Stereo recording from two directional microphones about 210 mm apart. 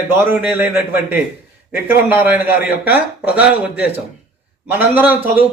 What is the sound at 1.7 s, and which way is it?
A man's voice, 10° right (ahead or behind).